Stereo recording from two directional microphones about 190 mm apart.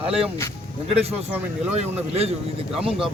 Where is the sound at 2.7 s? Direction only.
5° right (ahead or behind).